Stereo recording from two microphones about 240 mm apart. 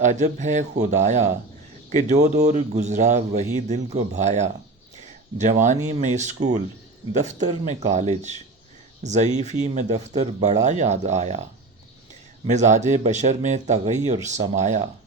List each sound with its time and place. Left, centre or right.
0.0 s a man's voice: right
5.6 s a man's voice: right
9.0 s a man's voice: right
12.5 s a man's voice: right